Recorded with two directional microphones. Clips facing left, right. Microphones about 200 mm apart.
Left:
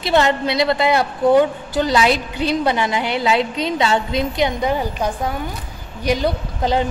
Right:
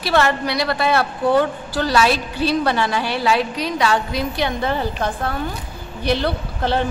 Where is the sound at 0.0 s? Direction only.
20° left (ahead or behind).